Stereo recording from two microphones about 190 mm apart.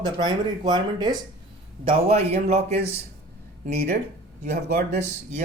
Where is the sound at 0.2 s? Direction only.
20° right (ahead or behind).